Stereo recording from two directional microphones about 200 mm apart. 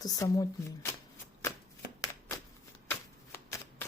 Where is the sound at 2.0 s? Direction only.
15° left (ahead or behind).